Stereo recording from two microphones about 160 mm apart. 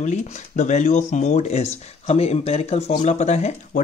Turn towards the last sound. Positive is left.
turn(degrees=45)  # may be behind; listen again after turning